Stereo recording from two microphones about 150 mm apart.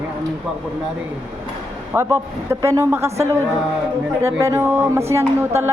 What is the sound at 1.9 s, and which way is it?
A woman's voice, 20° right (ahead or behind).